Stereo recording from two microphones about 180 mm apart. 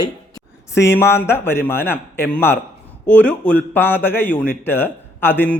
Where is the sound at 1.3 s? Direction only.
15° left (ahead or behind).